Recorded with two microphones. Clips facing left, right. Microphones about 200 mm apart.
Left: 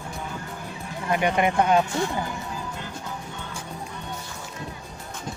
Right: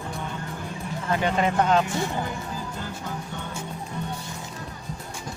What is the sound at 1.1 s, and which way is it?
Speech, 15° left (ahead or behind).